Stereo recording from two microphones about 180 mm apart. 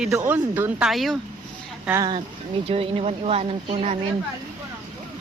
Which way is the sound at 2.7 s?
35° right (ahead or behind).